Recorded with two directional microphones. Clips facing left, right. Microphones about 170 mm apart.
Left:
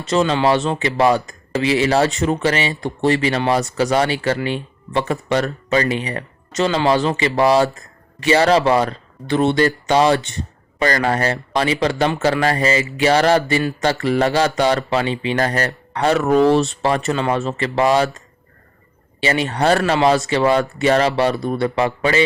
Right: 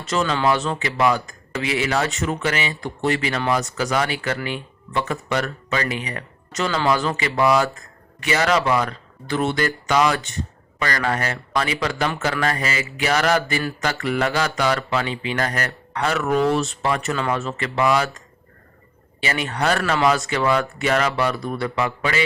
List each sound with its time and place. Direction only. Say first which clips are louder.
0.1 s speech: left 4 dB; 25° left (ahead or behind)
19.2 s speech: left 5 dB; 30° left (ahead or behind)